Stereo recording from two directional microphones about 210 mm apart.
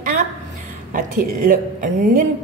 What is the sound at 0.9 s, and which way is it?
A woman's voice, 40° right (ahead or behind).